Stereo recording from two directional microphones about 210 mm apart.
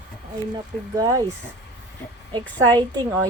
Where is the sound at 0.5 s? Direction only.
15° right (ahead or behind).